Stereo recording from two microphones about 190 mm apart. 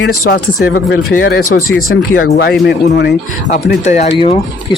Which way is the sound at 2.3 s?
60° left (ahead or behind).